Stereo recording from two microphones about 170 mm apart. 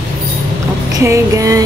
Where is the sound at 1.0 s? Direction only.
20° right (ahead or behind).